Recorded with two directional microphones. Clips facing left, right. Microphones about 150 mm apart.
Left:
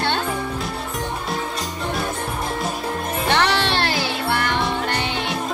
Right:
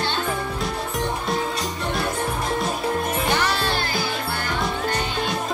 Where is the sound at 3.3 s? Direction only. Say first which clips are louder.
Left 6 dB; 75° left (ahead or behind).